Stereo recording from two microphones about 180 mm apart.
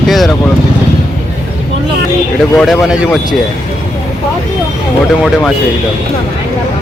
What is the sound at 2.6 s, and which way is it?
Speech, centre (ahead or behind).